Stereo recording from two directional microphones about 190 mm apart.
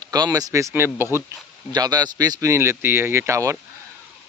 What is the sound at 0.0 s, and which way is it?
Speech, 20° right (ahead or behind).